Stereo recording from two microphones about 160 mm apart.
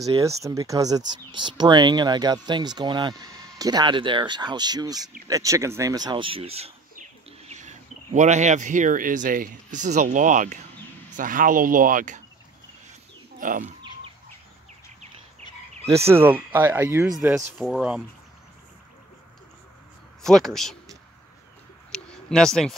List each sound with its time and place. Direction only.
0.2 s speech: 20° right (ahead or behind); by 12.2 s 55° right (ahead or behind)
13.4 s speech: 55° right (ahead or behind)
16.1 s speech: 15° right (ahead or behind)
20.2 s speech: centre (ahead or behind)
21.9 s a sound: 5° left (ahead or behind)